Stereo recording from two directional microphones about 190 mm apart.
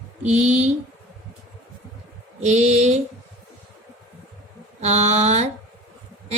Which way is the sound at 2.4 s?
35° right (ahead or behind).